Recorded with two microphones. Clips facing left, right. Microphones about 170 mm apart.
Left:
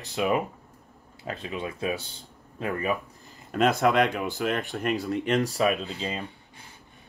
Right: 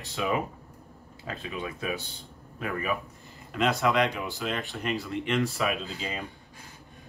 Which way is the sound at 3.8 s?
55° left (ahead or behind).